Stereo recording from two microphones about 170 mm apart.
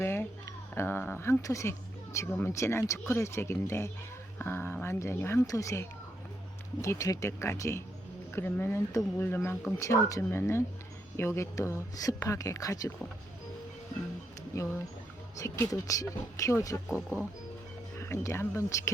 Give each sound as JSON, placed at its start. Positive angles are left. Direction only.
{"t": 0.0, "sound": "a sound", "side_deg": 15}
{"t": 2.1, "sound": "speech", "side_deg": 15}
{"t": 14.5, "sound": "speech", "side_deg": 20}
{"t": 16.9, "sound": "speech", "side_deg": -10}
{"t": 18.0, "sound": "speech", "side_deg": 15}